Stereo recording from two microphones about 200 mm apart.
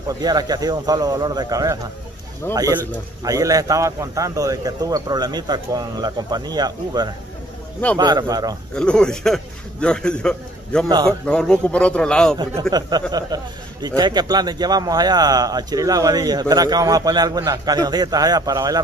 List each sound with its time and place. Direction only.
0.2 s a man's voice: 20° right (ahead or behind)
8.7 s a man's voice: 5° left (ahead or behind)
13.1 s a man's voice: 20° right (ahead or behind)